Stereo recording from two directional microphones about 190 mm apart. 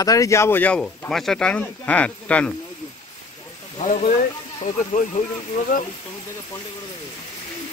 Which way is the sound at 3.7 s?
40° left (ahead or behind).